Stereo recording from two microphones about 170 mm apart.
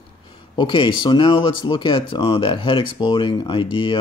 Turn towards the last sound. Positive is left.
turn(degrees=30)  # may be behind; listen again after turning